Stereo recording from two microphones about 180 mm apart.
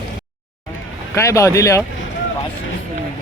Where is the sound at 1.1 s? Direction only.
15° left (ahead or behind).